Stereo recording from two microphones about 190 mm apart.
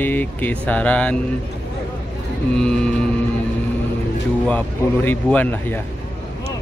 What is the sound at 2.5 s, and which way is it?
Mantra, 5° left (ahead or behind).